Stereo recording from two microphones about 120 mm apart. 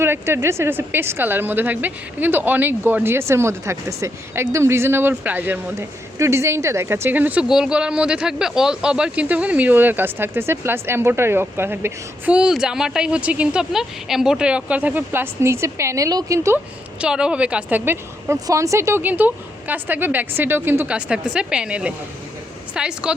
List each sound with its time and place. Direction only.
0.0 s a woman's voice: 20° right (ahead or behind)
17.0 s speech: 5° right (ahead or behind)
18.3 s speech: 30° right (ahead or behind); by 23.1 s 5° right (ahead or behind)